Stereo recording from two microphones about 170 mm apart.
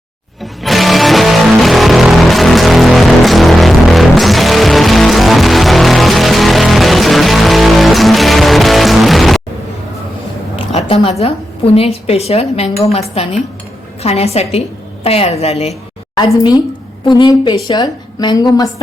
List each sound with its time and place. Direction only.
0.6 s music: centre (ahead or behind)
10.8 s a sound: 35° left (ahead or behind)
11.2 s speech: 35° left (ahead or behind)
16.1 s a woman's voice: 25° left (ahead or behind)